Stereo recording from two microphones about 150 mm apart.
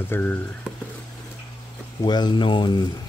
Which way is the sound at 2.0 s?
30° left (ahead or behind).